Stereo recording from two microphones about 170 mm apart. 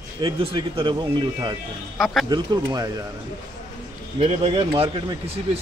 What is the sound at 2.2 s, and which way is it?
Speech, 25° right (ahead or behind).